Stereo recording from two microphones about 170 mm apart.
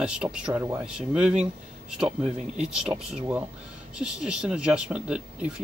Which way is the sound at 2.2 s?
40° right (ahead or behind).